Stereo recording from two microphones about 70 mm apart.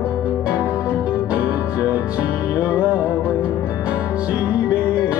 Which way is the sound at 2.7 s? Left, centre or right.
Centre.